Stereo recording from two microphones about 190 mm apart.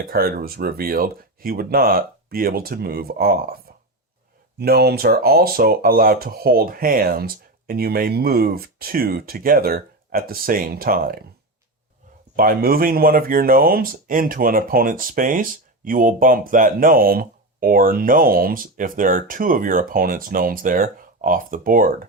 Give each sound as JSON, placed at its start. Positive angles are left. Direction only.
{"t": 0.0, "sound": "speech", "side_deg": -50}
{"t": 4.6, "sound": "speech", "side_deg": -55}
{"t": 12.4, "sound": "speech", "side_deg": -50}